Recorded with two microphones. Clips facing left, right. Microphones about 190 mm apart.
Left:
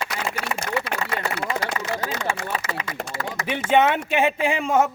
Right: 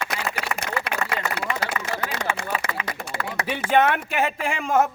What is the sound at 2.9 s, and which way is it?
Speech, 60° right (ahead or behind).